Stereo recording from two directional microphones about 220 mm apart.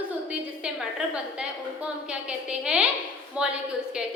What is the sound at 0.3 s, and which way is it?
A woman's voice, 5° right (ahead or behind).